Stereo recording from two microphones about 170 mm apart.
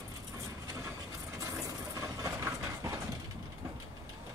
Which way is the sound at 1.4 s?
20° right (ahead or behind).